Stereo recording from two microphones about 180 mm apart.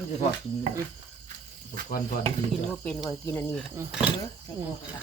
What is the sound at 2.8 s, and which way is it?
Speech, 5° left (ahead or behind).